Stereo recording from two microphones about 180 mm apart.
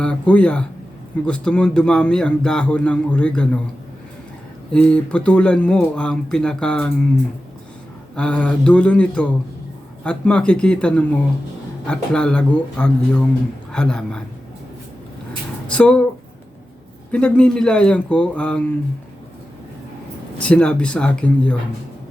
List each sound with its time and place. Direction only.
0.0 s speech: 5° left (ahead or behind)
4.7 s speech: 5° left (ahead or behind)
8.1 s speech: 5° left (ahead or behind)
15.6 s speech: 5° left (ahead or behind)
17.1 s speech: 5° left (ahead or behind)
20.4 s speech: 5° left (ahead or behind)